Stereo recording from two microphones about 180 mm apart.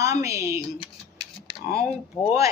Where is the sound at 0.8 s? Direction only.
30° left (ahead or behind).